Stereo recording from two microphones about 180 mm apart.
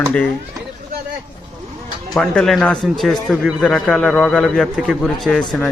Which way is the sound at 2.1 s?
5° left (ahead or behind).